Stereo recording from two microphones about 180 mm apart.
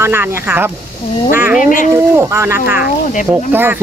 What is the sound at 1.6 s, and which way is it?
Speech, 45° left (ahead or behind).